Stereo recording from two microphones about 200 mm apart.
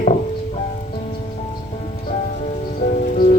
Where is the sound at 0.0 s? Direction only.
35° left (ahead or behind).